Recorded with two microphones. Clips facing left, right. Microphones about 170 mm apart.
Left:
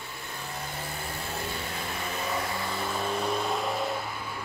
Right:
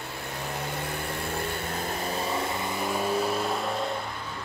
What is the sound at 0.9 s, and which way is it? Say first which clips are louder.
Vehicle: right 4 dB; 60° right (ahead or behind).